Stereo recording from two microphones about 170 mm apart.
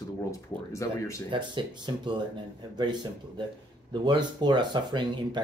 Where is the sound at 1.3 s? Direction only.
25° right (ahead or behind).